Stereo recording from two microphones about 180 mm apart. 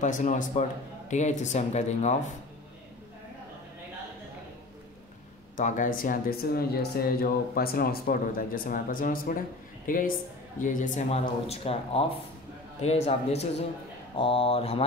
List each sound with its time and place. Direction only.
0.0 s speech: 45° left (ahead or behind)
5.6 s speech: 45° left (ahead or behind)